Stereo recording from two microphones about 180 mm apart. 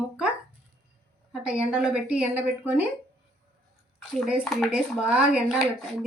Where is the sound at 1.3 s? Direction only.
5° right (ahead or behind).